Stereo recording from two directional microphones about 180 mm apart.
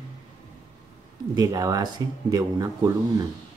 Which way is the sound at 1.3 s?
20° right (ahead or behind).